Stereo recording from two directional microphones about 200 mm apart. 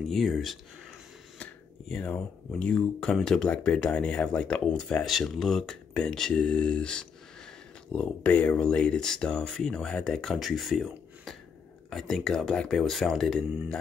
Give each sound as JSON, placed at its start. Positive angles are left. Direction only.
{"t": 0.1, "sound": "speech", "side_deg": 0}
{"t": 1.4, "sound": "a sound", "side_deg": 5}
{"t": 2.6, "sound": "speech", "side_deg": 5}